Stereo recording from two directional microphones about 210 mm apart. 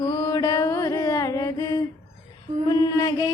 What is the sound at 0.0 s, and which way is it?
Music, 10° left (ahead or behind).